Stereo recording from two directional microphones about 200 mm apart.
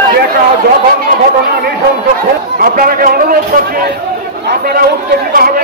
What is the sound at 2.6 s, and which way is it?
A man's voice, 45° right (ahead or behind).